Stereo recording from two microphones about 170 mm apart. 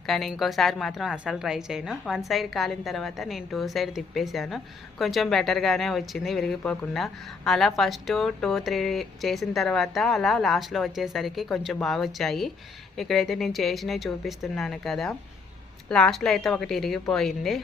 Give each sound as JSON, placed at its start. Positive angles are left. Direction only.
{"t": 0.0, "sound": "a woman's voice", "side_deg": 0}